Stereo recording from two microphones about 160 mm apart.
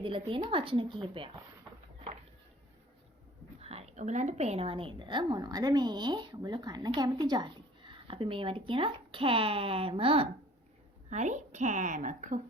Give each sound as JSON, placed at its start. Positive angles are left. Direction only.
{"t": 0.0, "sound": "a woman's voice", "side_deg": -35}
{"t": 3.6, "sound": "a woman's voice", "side_deg": -40}
{"t": 11.1, "sound": "a woman's voice", "side_deg": -45}